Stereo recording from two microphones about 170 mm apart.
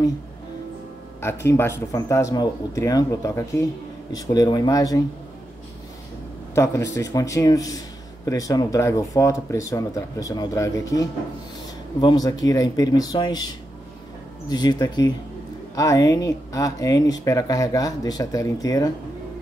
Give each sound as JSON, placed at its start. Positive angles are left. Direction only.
{"t": 1.2, "sound": "speech", "side_deg": 15}
{"t": 6.5, "sound": "speech", "side_deg": 20}
{"t": 14.5, "sound": "speech", "side_deg": 25}